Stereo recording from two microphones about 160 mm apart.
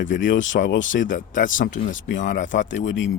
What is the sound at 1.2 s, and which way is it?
Speech, 55° left (ahead or behind).